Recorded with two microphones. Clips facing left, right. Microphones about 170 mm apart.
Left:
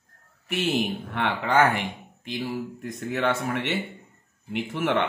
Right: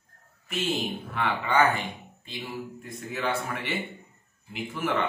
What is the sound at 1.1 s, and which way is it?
Speech, 75° left (ahead or behind).